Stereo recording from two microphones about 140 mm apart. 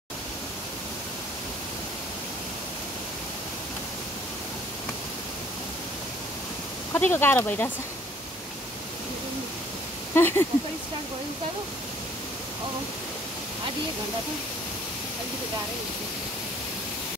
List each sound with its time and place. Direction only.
6.9 s speech: 15° left (ahead or behind)
10.1 s speech: 15° left (ahead or behind)